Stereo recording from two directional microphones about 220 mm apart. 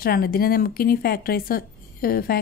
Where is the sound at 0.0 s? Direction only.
45° left (ahead or behind).